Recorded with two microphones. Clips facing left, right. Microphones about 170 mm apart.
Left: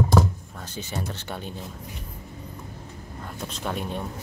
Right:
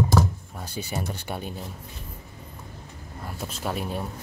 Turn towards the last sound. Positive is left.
turn(degrees=-5)  # may be behind; listen again after turning